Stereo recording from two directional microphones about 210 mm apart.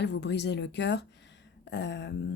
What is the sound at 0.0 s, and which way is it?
A woman's voice, 55° left (ahead or behind).